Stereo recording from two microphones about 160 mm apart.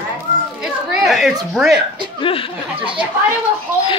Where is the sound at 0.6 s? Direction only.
Centre (ahead or behind).